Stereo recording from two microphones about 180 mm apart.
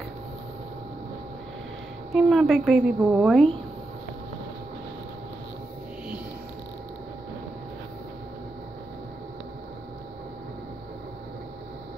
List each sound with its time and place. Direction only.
2.1 s a woman's voice: centre (ahead or behind)